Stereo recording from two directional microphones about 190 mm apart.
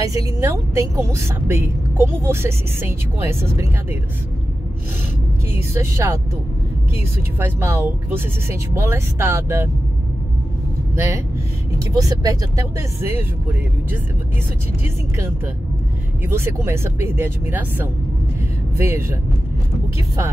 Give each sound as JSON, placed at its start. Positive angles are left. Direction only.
{"t": 0.0, "sound": "a woman's voice", "side_deg": -15}
{"t": 5.5, "sound": "a woman's voice", "side_deg": -15}
{"t": 11.0, "sound": "a woman's voice", "side_deg": -15}
{"t": 15.1, "sound": "a woman's voice", "side_deg": -10}